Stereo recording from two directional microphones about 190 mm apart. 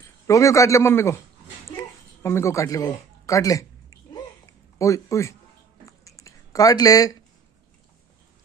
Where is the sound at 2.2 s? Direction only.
15° left (ahead or behind).